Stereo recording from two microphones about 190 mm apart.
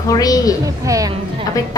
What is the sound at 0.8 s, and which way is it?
Speech, 15° right (ahead or behind).